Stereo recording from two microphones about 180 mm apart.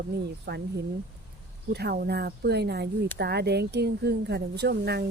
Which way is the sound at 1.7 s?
65° right (ahead or behind).